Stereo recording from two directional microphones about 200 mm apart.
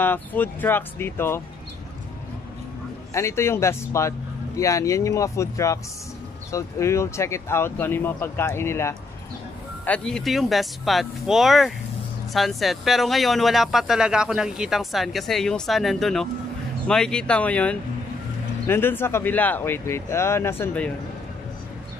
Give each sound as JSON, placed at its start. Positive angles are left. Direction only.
{"t": 0.0, "sound": "speech", "side_deg": 10}
{"t": 3.1, "sound": "speech", "side_deg": 15}